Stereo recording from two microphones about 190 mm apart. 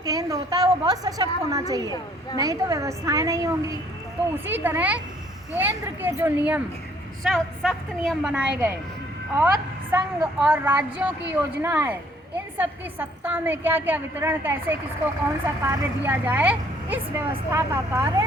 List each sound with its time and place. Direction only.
0.0 s a woman's voice: 20° right (ahead or behind)
7.3 s a woman's voice: centre (ahead or behind)